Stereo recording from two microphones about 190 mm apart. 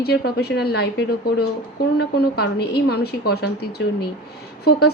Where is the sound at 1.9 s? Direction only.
60° left (ahead or behind).